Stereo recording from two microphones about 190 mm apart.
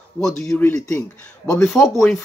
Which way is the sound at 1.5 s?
Centre (ahead or behind).